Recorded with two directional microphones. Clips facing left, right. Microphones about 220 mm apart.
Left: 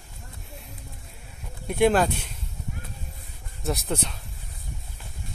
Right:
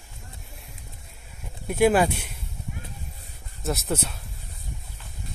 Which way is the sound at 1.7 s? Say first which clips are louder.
Right 1 dB; 5° right (ahead or behind).